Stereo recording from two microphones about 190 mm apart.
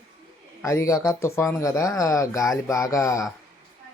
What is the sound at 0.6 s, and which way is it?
Speech, 15° left (ahead or behind).